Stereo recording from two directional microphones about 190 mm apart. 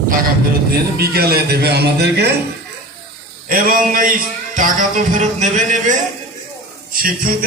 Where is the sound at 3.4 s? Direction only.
45° right (ahead or behind).